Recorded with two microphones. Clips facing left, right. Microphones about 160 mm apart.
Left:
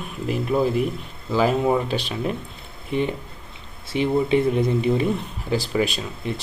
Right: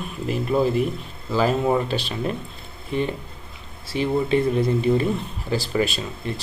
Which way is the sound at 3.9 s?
20° left (ahead or behind).